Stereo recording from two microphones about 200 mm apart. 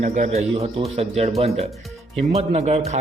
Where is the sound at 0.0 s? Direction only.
35° right (ahead or behind).